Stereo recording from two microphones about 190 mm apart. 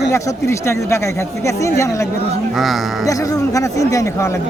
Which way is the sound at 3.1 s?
20° left (ahead or behind).